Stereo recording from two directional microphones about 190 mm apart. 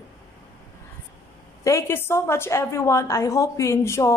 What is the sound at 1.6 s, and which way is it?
A woman's voice, 15° left (ahead or behind).